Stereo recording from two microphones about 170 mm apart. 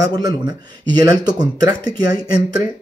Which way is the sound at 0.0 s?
20° right (ahead or behind).